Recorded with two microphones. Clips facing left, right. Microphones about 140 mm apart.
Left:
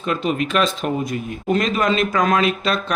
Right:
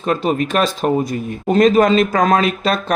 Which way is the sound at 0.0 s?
40° right (ahead or behind).